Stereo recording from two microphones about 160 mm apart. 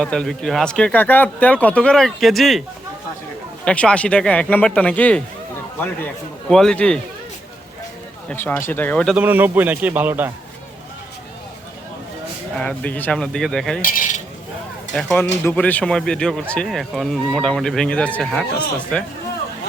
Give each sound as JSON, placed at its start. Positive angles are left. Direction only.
{"t": 0.0, "sound": "speech", "side_deg": 5}
{"t": 6.5, "sound": "speech", "side_deg": 5}
{"t": 8.3, "sound": "speech", "side_deg": 10}
{"t": 9.1, "sound": "a man's voice", "side_deg": -10}
{"t": 12.5, "sound": "speech", "side_deg": 10}
{"t": 13.8, "sound": "cutlery", "side_deg": 55}
{"t": 14.9, "sound": "speech", "side_deg": 5}